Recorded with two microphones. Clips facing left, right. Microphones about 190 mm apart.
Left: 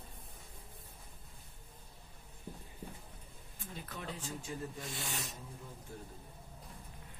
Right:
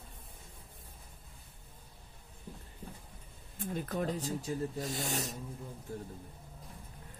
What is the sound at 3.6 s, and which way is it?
Speech, 50° right (ahead or behind).